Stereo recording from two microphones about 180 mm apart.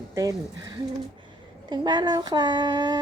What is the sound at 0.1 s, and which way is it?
Speech, 20° right (ahead or behind).